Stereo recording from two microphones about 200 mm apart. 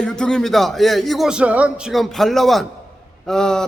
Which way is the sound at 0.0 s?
5° left (ahead or behind).